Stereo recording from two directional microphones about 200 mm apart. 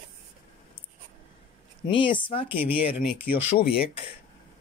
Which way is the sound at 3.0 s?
55° left (ahead or behind).